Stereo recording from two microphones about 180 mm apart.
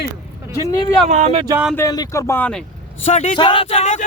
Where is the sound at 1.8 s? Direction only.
20° left (ahead or behind).